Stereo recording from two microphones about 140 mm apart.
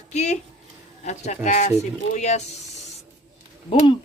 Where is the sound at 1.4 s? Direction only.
60° left (ahead or behind).